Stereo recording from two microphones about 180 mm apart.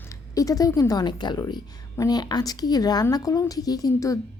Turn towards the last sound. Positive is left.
turn(degrees=20)  # may be behind; listen again after turning